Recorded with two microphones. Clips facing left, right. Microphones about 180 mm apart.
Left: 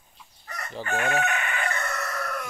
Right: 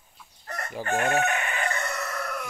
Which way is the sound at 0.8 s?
40° right (ahead or behind).